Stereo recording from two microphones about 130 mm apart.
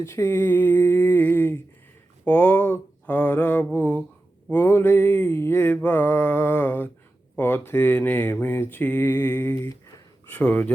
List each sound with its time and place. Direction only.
0.0 s mantra: 20° left (ahead or behind)